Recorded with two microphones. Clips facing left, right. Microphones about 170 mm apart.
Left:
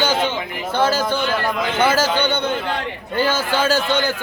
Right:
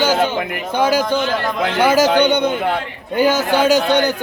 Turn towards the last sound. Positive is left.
turn(degrees=-15)  # may be behind; listen again after turning